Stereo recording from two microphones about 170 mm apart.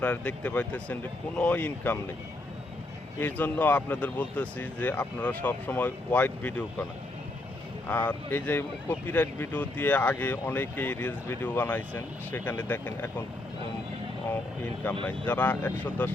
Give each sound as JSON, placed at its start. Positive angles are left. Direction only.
{"t": 0.0, "sound": "speech", "side_deg": 10}
{"t": 3.2, "sound": "speech", "side_deg": 10}
{"t": 7.9, "sound": "speech", "side_deg": 10}
{"t": 14.3, "sound": "speech", "side_deg": 10}